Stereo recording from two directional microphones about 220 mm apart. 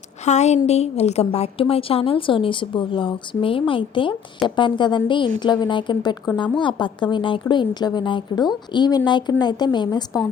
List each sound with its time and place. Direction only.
0.3 s a woman's voice: 30° left (ahead or behind)